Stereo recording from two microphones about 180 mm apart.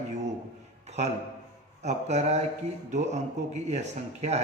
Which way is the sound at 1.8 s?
40° right (ahead or behind).